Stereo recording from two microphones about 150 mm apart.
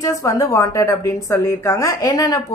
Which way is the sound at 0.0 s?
20° left (ahead or behind).